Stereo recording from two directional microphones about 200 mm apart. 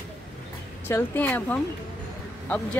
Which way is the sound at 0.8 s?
10° left (ahead or behind).